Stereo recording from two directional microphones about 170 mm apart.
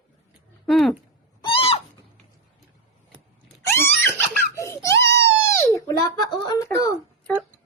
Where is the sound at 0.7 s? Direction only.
Centre (ahead or behind).